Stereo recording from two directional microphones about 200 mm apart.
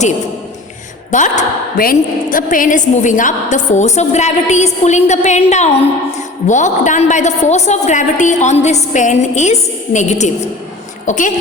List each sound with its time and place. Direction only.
1.1 s a woman's voice: 40° left (ahead or behind)